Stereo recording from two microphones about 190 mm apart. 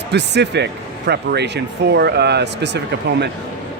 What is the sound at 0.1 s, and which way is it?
Speech, 65° right (ahead or behind).